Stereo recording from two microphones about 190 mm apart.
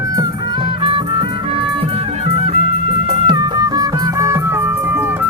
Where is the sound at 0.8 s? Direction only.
30° right (ahead or behind).